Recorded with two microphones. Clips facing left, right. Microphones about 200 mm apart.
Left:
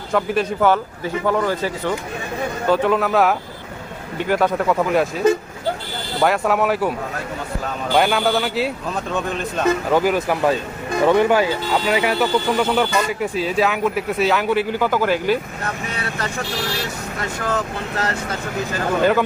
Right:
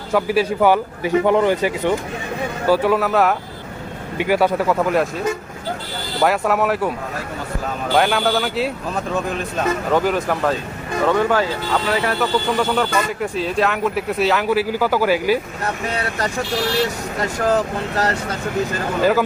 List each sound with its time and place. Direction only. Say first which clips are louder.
0.1 s a man's voice: right 2 dB; 5° right (ahead or behind)
2.6 s speech: right 1 dB; 5° right (ahead or behind)
7.9 s speech: even; centre (ahead or behind)
11.0 s speech: left 2 dB; 15° left (ahead or behind); by 15.4 s 10° right (ahead or behind)
17.4 s speech: right 6 dB; 35° right (ahead or behind)